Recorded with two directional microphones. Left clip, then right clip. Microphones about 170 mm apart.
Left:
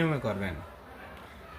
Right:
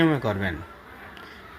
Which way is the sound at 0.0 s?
25° right (ahead or behind).